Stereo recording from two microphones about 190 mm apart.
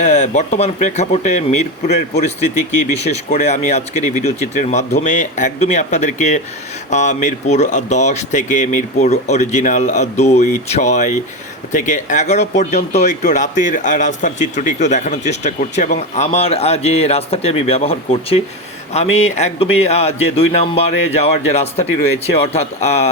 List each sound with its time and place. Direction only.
0.0 s speech: 40° left (ahead or behind)